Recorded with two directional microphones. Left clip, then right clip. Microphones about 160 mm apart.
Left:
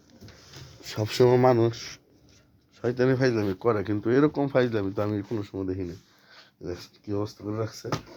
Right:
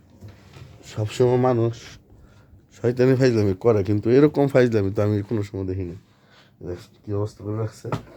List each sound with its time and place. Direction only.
0.8 s speech: 20° left (ahead or behind)
2.7 s speech: 35° right (ahead or behind)
4.3 s speech: 60° right (ahead or behind); by 5.5 s 30° right (ahead or behind)
5.5 s speech: 10° right (ahead or behind)
6.3 s speech: 15° left (ahead or behind)